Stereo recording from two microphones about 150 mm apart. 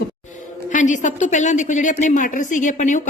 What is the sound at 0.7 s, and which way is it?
A woman's voice, 55° left (ahead or behind).